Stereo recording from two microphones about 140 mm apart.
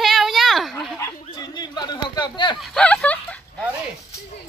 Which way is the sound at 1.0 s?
30° left (ahead or behind).